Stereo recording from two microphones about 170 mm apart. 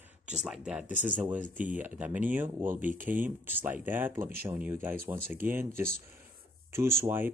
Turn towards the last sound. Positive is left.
turn(degrees=-10)  # may be behind; listen again after turning